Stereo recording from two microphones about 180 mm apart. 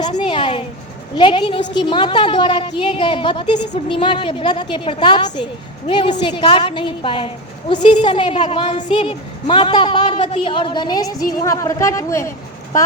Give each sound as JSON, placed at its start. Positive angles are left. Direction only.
{"t": 0.3, "sound": "a woman's voice", "side_deg": 30}
{"t": 11.2, "sound": "speech", "side_deg": 55}
{"t": 11.4, "sound": "speech", "side_deg": 15}